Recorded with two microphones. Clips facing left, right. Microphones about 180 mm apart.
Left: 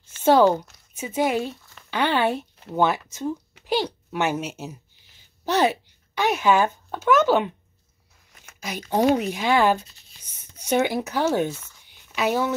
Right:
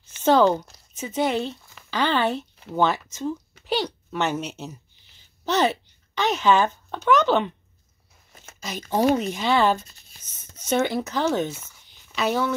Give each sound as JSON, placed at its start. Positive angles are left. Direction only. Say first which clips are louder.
{"t": 0.2, "sound": "a child's voice", "louder": "left 1 dB", "side_deg": 10}
{"t": 8.5, "sound": "speech", "louder": "left 1 dB", "side_deg": 15}
{"t": 11.5, "sound": "speech", "louder": "even", "side_deg": -15}
{"t": 11.9, "sound": "a sound", "louder": "left 1 dB", "side_deg": 10}